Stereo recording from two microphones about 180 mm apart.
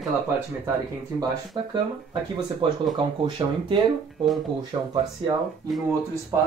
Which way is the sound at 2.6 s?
30° right (ahead or behind).